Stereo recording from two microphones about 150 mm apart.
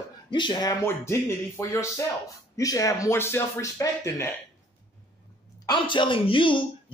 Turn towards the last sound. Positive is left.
turn(degrees=35)  # may be behind; listen again after turning